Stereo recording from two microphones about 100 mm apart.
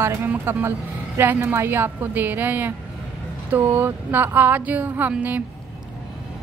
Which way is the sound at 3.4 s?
20° right (ahead or behind).